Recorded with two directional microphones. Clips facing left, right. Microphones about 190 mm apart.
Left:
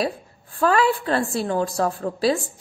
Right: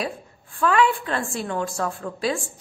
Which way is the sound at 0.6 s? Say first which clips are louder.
Left 1 dB; 35° left (ahead or behind).